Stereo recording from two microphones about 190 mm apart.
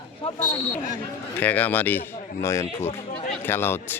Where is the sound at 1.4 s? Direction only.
10° left (ahead or behind).